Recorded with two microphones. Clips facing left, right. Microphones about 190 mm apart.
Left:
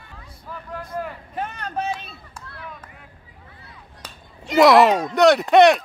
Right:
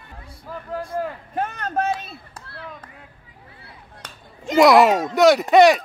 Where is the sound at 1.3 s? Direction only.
45° right (ahead or behind).